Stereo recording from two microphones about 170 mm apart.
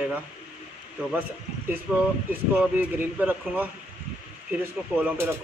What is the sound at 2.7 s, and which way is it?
Speech, 10° right (ahead or behind).